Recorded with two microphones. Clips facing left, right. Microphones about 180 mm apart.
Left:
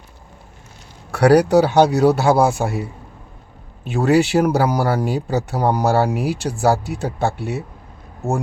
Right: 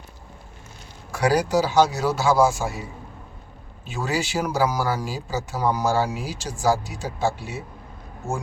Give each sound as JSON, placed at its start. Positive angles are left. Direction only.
{"t": 1.1, "sound": "speech", "side_deg": 65}